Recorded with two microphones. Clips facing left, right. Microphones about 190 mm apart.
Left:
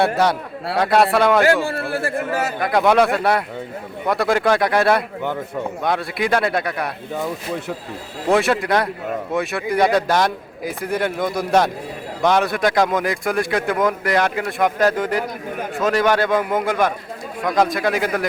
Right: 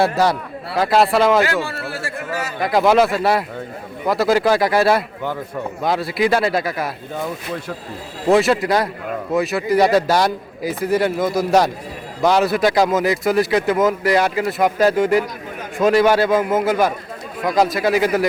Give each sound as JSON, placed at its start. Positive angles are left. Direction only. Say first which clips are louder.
{"t": 0.0, "sound": "a man's voice", "louder": "right 1 dB", "side_deg": 0}
{"t": 1.6, "sound": "speech", "louder": "left 5 dB", "side_deg": 55}
{"t": 2.6, "sound": "a man's voice", "louder": "right 2 dB", "side_deg": 0}
{"t": 8.3, "sound": "a man's voice", "louder": "right 2 dB", "side_deg": 0}